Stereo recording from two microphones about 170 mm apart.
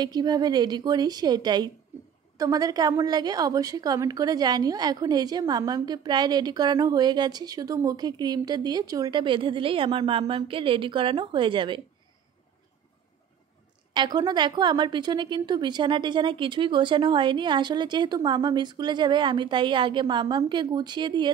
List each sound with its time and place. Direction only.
0.0 s a woman's voice: 25° right (ahead or behind)
13.9 s a woman's voice: 25° right (ahead or behind)